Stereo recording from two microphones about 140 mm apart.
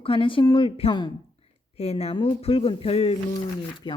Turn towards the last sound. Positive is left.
turn(degrees=35)  # may be behind; listen again after turning